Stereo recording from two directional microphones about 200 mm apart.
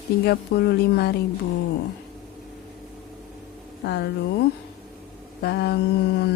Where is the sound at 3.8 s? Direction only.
55° left (ahead or behind).